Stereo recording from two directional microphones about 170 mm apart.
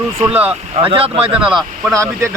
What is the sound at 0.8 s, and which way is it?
Speech, 30° right (ahead or behind).